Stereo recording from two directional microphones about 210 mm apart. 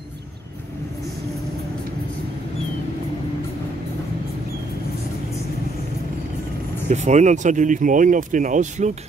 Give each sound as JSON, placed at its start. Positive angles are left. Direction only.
{"t": 6.9, "sound": "speech", "side_deg": -35}